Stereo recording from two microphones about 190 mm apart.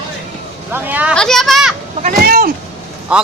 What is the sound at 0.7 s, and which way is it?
Vehicle, 10° right (ahead or behind).